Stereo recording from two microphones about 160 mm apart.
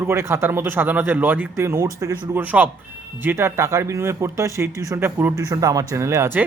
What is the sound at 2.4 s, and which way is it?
Speech, 10° right (ahead or behind).